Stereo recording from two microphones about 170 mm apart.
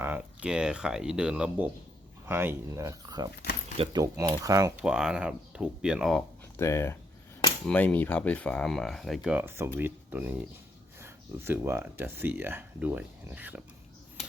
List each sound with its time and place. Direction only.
0.0 s speech: 10° right (ahead or behind)
4.8 s speech: 5° right (ahead or behind)
6.6 s speech: 15° left (ahead or behind); by 13.6 s 10° right (ahead or behind)